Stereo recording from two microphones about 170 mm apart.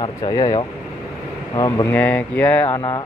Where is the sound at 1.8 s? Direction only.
10° left (ahead or behind).